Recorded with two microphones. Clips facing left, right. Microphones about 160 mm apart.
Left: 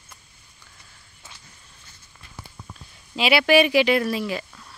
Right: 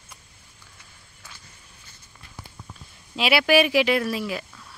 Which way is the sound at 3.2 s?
Centre (ahead or behind).